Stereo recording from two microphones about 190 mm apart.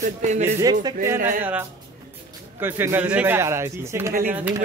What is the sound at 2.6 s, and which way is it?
Speech, 10° right (ahead or behind).